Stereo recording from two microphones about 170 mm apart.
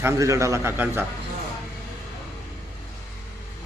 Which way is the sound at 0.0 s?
20° right (ahead or behind).